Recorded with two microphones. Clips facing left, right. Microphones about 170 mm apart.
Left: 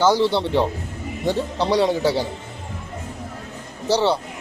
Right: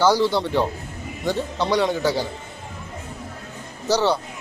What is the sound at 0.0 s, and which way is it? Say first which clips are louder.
A man's voice: left 1 dB; 25° left (ahead or behind).